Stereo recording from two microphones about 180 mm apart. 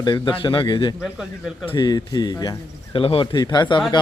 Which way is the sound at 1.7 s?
20° left (ahead or behind).